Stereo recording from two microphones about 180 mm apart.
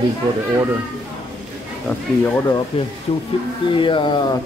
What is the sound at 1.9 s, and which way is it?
Speech, 10° left (ahead or behind).